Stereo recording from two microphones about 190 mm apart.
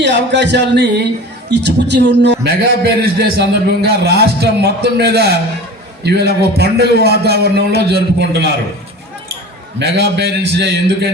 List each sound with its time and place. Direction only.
0.0 s a sound: 65° right (ahead or behind)
1.5 s a man's voice: 65° right (ahead or behind)
9.7 s a man's voice: 65° right (ahead or behind)